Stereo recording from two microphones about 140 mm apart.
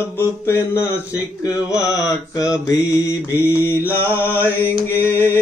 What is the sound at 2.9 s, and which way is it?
Mantra, 25° left (ahead or behind).